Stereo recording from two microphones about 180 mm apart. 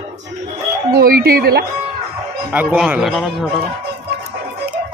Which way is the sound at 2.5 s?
10° right (ahead or behind).